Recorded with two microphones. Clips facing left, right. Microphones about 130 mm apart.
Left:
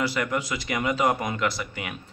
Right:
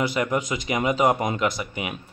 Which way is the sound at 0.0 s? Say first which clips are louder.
Right 3 dB; 20° right (ahead or behind).